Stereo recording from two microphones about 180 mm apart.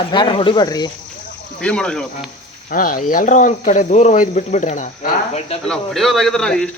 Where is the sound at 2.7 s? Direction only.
50° left (ahead or behind).